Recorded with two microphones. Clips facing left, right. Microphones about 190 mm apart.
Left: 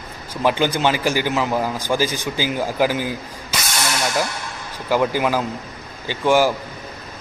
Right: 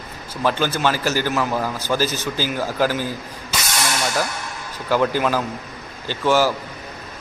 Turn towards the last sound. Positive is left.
turn(degrees=15)  # may be behind; listen again after turning